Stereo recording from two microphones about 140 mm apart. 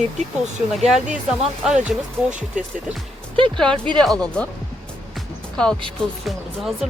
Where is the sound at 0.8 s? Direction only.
5° right (ahead or behind).